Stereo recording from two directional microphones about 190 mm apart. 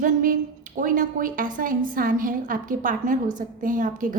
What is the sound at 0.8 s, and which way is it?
A woman's voice, 45° right (ahead or behind).